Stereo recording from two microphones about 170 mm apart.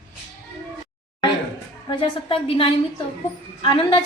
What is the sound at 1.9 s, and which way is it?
A woman's voice, 30° left (ahead or behind).